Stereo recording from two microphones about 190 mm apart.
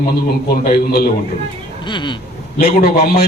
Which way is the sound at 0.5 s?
50° left (ahead or behind).